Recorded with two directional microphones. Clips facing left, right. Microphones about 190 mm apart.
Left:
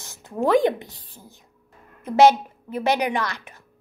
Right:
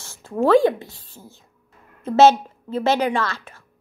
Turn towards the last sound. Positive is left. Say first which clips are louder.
# right 2 dB
turn(degrees=15)  # may be behind; listen again after turning